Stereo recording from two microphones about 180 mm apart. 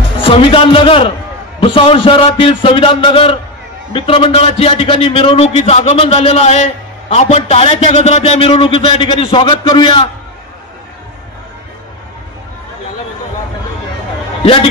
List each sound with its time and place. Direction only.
0.2 s a man's voice: 30° left (ahead or behind)
14.4 s a man's voice: 30° left (ahead or behind)